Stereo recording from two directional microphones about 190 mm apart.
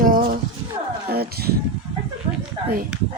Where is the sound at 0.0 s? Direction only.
50° right (ahead or behind).